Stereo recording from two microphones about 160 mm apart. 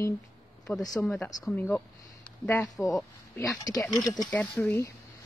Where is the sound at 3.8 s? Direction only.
25° left (ahead or behind).